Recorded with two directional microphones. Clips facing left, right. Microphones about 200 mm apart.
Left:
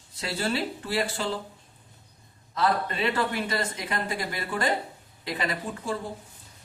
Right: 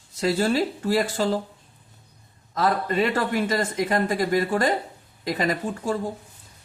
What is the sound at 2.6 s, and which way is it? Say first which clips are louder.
Speech: right 4 dB; 45° right (ahead or behind).